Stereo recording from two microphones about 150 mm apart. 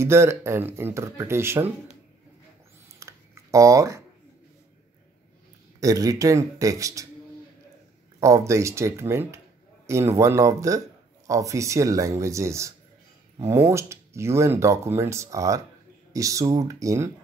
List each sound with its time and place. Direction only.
0.0 s speech: 15° right (ahead or behind)
3.0 s a sound: 20° right (ahead or behind)
5.8 s speech: 25° right (ahead or behind)
8.2 s speech: 20° right (ahead or behind)